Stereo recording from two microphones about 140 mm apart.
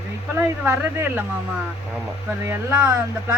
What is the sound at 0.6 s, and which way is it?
Speech, 15° right (ahead or behind).